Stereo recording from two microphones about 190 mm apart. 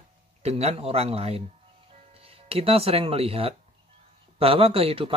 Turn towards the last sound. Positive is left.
turn(degrees=-30)  # may be behind; listen again after turning